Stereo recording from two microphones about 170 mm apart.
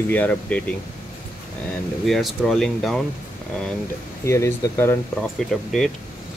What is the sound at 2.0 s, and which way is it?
Speech, centre (ahead or behind).